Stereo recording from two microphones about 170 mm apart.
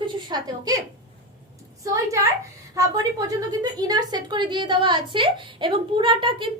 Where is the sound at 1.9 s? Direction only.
15° right (ahead or behind).